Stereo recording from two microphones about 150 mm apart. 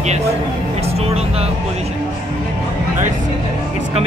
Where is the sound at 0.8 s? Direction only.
45° right (ahead or behind).